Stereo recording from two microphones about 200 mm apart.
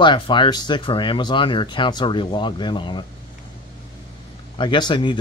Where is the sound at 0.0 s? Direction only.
25° left (ahead or behind).